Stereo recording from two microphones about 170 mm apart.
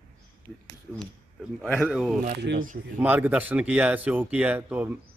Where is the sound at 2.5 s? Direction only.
90° right.